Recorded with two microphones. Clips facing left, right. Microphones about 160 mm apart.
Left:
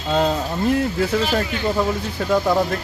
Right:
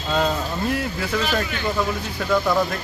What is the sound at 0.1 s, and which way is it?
A man's voice, 25° left (ahead or behind).